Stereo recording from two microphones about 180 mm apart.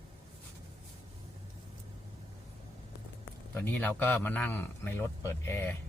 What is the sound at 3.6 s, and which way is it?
A man's voice, 10° left (ahead or behind).